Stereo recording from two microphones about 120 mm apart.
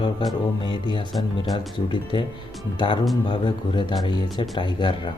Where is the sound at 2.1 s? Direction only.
40° left (ahead or behind).